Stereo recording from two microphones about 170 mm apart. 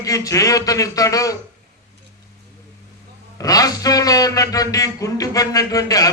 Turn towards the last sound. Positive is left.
turn(degrees=20)  # may be behind; listen again after turning